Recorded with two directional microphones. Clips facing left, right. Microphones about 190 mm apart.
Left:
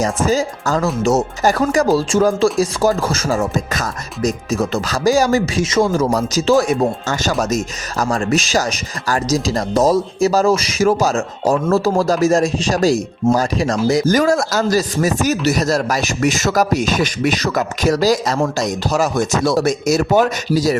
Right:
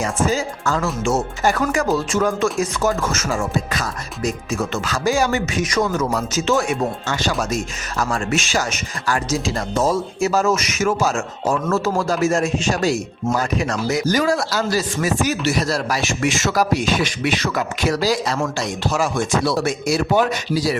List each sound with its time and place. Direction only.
0.0 s speech: 40° left (ahead or behind)